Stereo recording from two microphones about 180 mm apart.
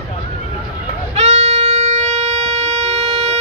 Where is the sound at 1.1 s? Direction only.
35° right (ahead or behind).